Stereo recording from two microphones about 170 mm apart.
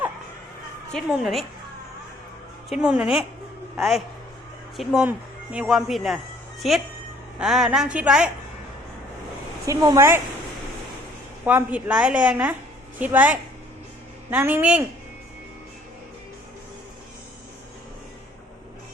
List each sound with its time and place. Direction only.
0.9 s speech: centre (ahead or behind)
2.6 s speech: 5° right (ahead or behind)
9.6 s speech: 20° right (ahead or behind)
11.4 s a woman's voice: 10° right (ahead or behind)